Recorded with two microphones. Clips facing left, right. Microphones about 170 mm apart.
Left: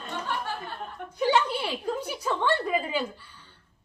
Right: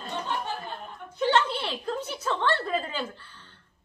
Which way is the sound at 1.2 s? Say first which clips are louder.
Even; 10° left (ahead or behind).